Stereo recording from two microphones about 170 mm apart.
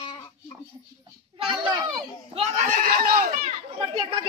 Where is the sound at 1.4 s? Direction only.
30° right (ahead or behind); by 3.3 s 55° right (ahead or behind).